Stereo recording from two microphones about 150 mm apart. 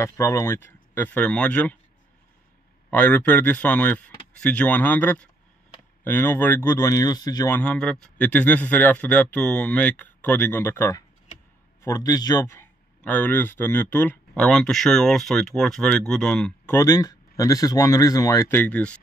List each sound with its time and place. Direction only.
0.0 s speech: 20° left (ahead or behind)
2.9 s speech: 10° left (ahead or behind); by 7.5 s 25° left (ahead or behind)
7.5 s a man's voice: 5° left (ahead or behind)
16.7 s speech: 25° left (ahead or behind); by 18.9 s 10° left (ahead or behind)